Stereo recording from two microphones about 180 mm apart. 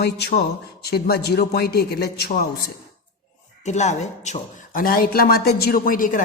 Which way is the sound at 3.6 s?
40° left (ahead or behind).